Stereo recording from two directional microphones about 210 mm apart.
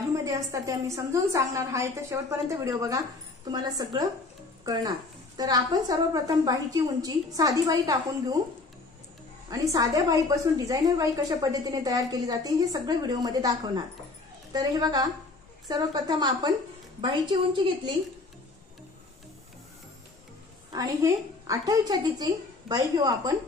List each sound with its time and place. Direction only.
0.1 s a woman's voice: 15° right (ahead or behind)
5.4 s a woman's voice: 20° right (ahead or behind)
9.5 s a woman's voice: 15° right (ahead or behind)
20.7 s a woman's voice: 15° right (ahead or behind)